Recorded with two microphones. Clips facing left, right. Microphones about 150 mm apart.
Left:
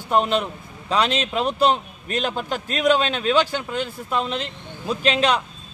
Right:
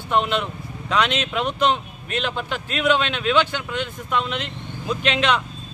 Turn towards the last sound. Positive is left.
turn(degrees=35)  # may be behind; listen again after turning